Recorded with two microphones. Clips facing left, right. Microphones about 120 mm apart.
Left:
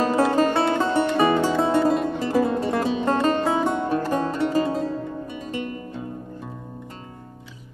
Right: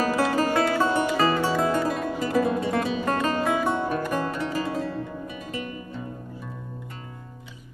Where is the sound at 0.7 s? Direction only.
5° right (ahead or behind).